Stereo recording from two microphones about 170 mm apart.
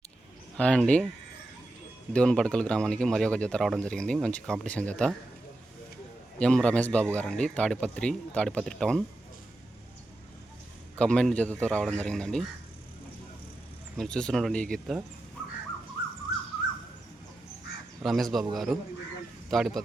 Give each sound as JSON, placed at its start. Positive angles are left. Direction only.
{"t": 0.5, "sound": "a man's voice", "side_deg": 5}
{"t": 2.1, "sound": "speech", "side_deg": 5}
{"t": 6.4, "sound": "a man's voice", "side_deg": 5}
{"t": 10.9, "sound": "speech", "side_deg": 5}
{"t": 13.9, "sound": "speech", "side_deg": 5}
{"t": 18.0, "sound": "speech", "side_deg": 0}